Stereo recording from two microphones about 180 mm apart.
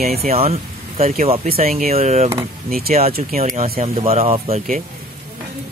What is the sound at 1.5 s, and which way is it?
Speech, 55° right (ahead or behind).